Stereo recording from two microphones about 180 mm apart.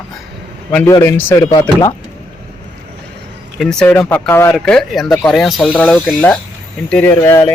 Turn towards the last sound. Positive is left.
turn(degrees=15)  # may be behind; listen again after turning